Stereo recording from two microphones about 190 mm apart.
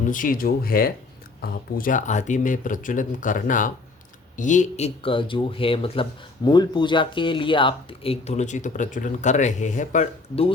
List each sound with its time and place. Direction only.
0.0 s speech: 45° left (ahead or behind)